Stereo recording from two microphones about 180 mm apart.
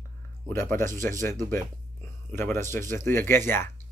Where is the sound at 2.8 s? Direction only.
45° right (ahead or behind).